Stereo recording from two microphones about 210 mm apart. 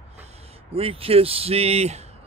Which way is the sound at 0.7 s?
25° right (ahead or behind).